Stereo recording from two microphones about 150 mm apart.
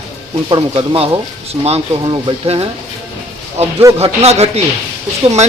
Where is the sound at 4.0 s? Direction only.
45° right (ahead or behind).